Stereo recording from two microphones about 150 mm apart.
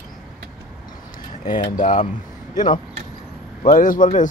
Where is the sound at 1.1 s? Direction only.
30° left (ahead or behind).